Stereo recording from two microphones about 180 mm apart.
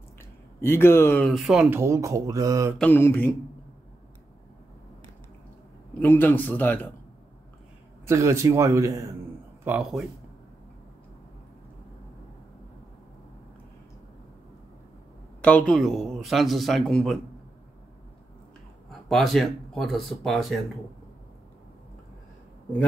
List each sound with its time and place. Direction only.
0.6 s speech: 15° left (ahead or behind)
1.3 s speech: centre (ahead or behind); by 2.7 s 20° right (ahead or behind)
2.8 s speech: 10° left (ahead or behind)
5.9 s speech: 10° left (ahead or behind)
8.1 s speech: 15° right (ahead or behind)
9.7 s speech: 5° right (ahead or behind)
15.4 s speech: 5° left (ahead or behind)
18.9 s speech: centre (ahead or behind)